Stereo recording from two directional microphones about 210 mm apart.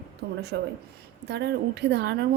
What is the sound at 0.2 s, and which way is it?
A woman's voice, 50° right (ahead or behind).